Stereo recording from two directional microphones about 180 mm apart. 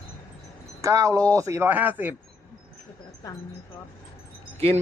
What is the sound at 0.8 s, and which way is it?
Speech, 20° right (ahead or behind).